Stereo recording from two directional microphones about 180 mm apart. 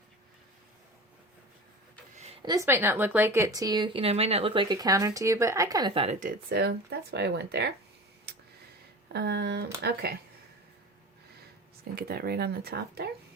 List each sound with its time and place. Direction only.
2.1 s a sound: 35° right (ahead or behind)
2.4 s speech: 20° right (ahead or behind)
6.1 s speech: 60° right (ahead or behind)
9.1 s speech: 65° right (ahead or behind)
11.9 s speech: 60° right (ahead or behind)